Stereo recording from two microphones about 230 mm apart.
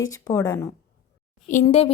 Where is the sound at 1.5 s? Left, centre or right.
Left.